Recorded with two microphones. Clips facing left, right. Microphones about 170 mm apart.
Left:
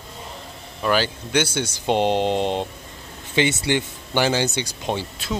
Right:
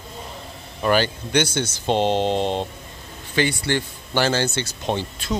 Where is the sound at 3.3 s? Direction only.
20° left (ahead or behind).